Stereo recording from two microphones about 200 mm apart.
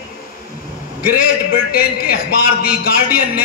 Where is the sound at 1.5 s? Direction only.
45° left (ahead or behind).